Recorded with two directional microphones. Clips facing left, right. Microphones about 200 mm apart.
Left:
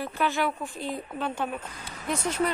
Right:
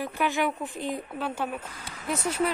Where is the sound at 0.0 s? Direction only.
15° right (ahead or behind).